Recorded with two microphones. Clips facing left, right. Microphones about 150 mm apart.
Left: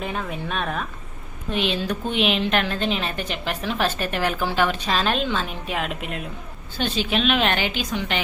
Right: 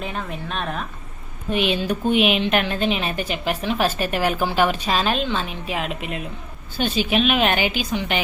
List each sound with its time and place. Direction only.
0.0 s a woman's voice: centre (ahead or behind)
1.5 s a woman's voice: 15° right (ahead or behind)
6.7 s a woman's voice: 10° right (ahead or behind)